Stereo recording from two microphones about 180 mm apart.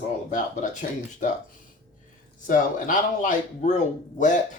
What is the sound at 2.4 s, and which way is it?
Speech, 45° left (ahead or behind).